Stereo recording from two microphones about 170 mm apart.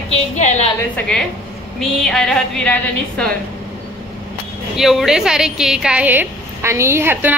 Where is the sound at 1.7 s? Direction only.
Centre (ahead or behind).